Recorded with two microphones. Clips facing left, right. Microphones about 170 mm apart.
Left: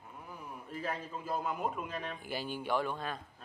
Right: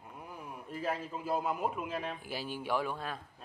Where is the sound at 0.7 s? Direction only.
5° right (ahead or behind).